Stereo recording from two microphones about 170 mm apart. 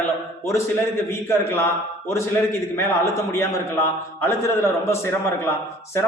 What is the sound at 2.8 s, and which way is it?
A man's voice, 15° left (ahead or behind).